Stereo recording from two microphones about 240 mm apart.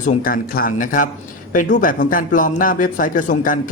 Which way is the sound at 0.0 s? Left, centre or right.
Left.